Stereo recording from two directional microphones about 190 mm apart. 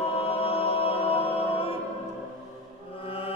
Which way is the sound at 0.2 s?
30° left (ahead or behind).